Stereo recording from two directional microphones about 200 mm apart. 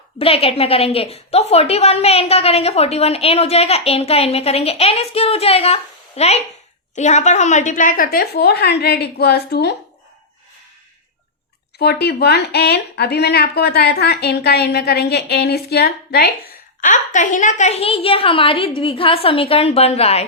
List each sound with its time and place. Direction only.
0.2 s a woman's voice: 30° left (ahead or behind); by 9.7 s 55° left (ahead or behind)
11.8 s speech: 55° left (ahead or behind)
16.8 s a woman's voice: 40° left (ahead or behind)